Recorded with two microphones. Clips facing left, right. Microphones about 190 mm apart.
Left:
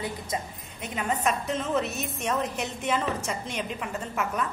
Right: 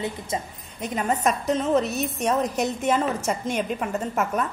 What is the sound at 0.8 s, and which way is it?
A woman's voice, 40° right (ahead or behind).